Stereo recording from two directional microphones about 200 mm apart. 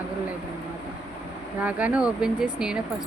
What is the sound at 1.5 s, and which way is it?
Speech, 5° right (ahead or behind).